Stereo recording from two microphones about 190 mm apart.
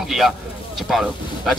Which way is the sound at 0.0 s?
Centre (ahead or behind).